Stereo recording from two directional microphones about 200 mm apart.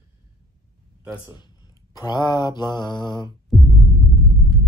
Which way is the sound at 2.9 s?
20° left (ahead or behind).